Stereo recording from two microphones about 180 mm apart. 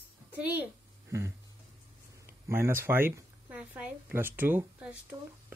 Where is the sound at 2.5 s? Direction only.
15° right (ahead or behind).